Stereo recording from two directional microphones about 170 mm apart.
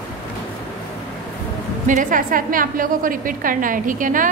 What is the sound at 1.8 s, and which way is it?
A woman's voice, 50° right (ahead or behind).